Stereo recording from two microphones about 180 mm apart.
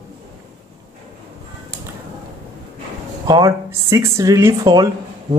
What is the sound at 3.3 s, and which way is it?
Speech, 20° right (ahead or behind).